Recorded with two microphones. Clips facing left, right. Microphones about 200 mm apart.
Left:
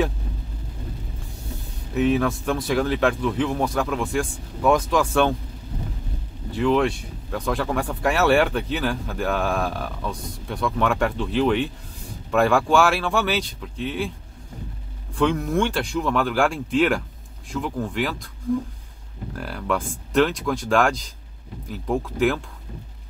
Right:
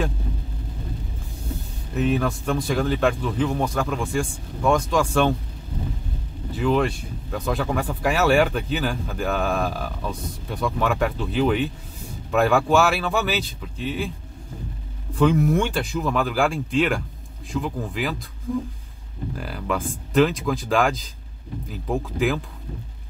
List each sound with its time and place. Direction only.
2.0 s speech: centre (ahead or behind)
6.5 s speech: centre (ahead or behind)
15.1 s speech: 5° right (ahead or behind)
19.3 s speech: centre (ahead or behind)